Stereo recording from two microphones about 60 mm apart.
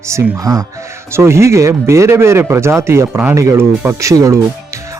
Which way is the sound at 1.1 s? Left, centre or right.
Right.